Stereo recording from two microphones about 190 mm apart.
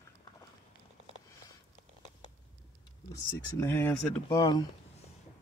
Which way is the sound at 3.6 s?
10° left (ahead or behind).